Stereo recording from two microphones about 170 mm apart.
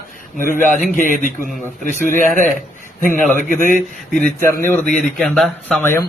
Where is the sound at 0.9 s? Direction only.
50° left (ahead or behind).